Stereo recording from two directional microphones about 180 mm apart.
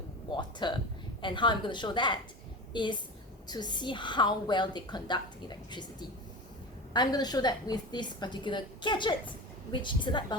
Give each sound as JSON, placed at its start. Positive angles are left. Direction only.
{"t": 0.3, "sound": "a woman's voice", "side_deg": 25}